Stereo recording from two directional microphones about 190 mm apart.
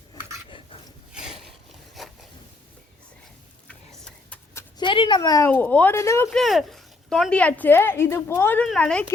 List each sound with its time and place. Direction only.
0.1 s dog: 25° left (ahead or behind)
1.2 s a sound: centre (ahead or behind)
2.0 s zipper: centre (ahead or behind)
4.0 s a sound: 5° left (ahead or behind)
4.8 s speech: 25° left (ahead or behind)
6.2 s speech: centre (ahead or behind)